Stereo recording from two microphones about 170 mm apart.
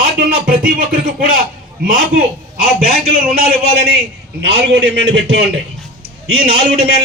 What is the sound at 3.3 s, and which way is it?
A man's voice, 65° right (ahead or behind).